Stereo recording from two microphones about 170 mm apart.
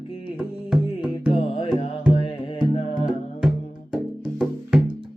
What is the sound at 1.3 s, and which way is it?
Music, 35° left (ahead or behind).